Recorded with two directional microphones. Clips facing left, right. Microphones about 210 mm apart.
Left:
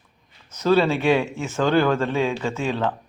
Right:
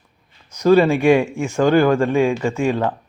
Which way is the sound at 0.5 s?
10° right (ahead or behind).